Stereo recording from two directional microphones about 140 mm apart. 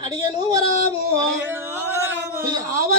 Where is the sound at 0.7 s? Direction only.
50° left (ahead or behind).